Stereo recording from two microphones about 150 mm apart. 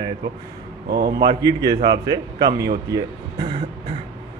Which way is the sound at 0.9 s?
90° right.